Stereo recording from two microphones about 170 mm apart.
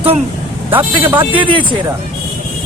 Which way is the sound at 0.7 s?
15° right (ahead or behind).